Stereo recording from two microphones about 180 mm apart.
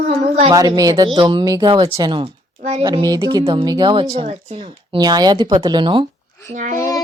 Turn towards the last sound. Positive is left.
turn(degrees=-45)  # may be behind; listen again after turning